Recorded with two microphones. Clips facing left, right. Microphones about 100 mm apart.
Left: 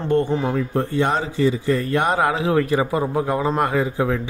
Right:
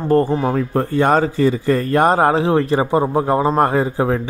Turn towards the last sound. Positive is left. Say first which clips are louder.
# right 3 dB
turn(degrees=-35)  # may be behind; listen again after turning